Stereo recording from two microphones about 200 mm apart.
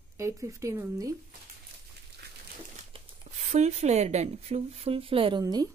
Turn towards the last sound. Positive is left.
turn(degrees=-20)  # may be behind; listen again after turning